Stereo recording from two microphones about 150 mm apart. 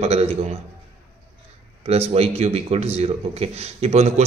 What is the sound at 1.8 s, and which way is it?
Speech, 45° right (ahead or behind).